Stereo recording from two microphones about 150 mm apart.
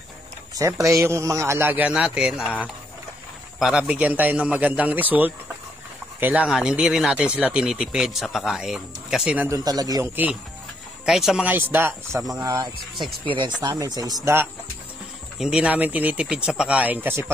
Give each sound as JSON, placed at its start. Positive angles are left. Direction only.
{"t": 0.6, "sound": "a man's voice", "side_deg": -20}
{"t": 9.5, "sound": "speech", "side_deg": -25}
{"t": 11.1, "sound": "a man's voice", "side_deg": -5}
{"t": 12.4, "sound": "speech", "side_deg": -25}
{"t": 15.3, "sound": "a man's voice", "side_deg": -5}